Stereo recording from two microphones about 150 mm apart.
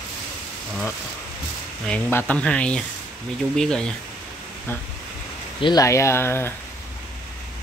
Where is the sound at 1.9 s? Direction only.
10° left (ahead or behind).